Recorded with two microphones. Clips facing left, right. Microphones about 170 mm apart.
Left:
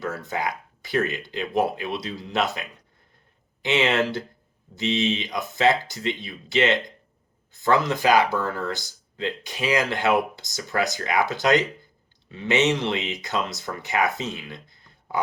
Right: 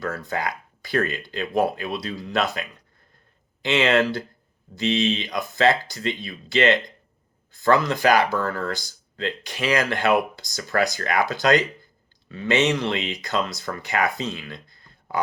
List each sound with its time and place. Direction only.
0.0 s speech: 20° left (ahead or behind)